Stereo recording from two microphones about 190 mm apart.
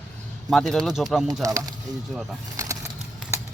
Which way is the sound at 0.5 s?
Centre (ahead or behind).